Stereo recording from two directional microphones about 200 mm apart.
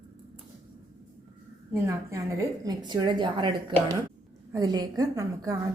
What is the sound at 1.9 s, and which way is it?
A woman's voice, 15° right (ahead or behind).